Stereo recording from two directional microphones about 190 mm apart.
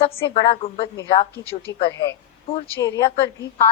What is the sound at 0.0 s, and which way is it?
A woman's voice, 30° left (ahead or behind).